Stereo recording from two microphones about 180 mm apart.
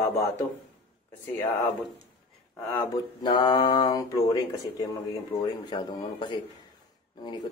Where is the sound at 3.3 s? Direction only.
25° left (ahead or behind).